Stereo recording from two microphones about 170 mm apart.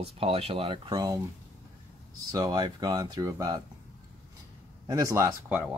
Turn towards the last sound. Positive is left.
turn(degrees=-15)  # may be behind; listen again after turning